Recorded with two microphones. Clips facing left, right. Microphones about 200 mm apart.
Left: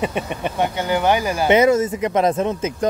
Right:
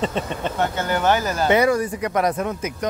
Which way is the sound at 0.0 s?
15° left (ahead or behind).